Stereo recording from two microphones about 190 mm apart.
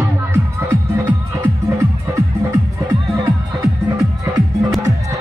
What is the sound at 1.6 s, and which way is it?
Music, 15° right (ahead or behind).